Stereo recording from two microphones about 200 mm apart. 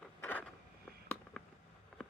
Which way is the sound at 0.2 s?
10° left (ahead or behind).